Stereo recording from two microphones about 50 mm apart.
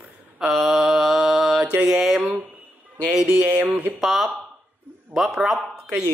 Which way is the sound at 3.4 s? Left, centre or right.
Right.